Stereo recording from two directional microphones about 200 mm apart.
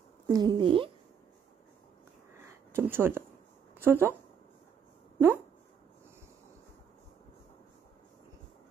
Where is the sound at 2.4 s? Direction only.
10° right (ahead or behind).